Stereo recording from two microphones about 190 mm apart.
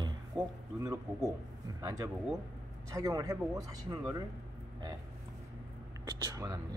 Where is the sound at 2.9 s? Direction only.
15° right (ahead or behind).